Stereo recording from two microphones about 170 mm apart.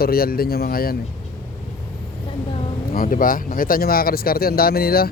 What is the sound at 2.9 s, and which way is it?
Speech, 55° left (ahead or behind).